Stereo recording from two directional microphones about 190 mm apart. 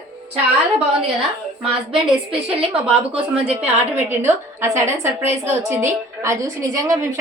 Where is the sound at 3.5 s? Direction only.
10° right (ahead or behind).